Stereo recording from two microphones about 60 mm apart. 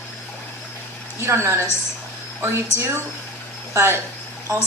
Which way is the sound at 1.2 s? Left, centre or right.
Right.